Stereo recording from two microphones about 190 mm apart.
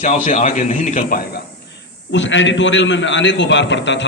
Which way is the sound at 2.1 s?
75° left (ahead or behind).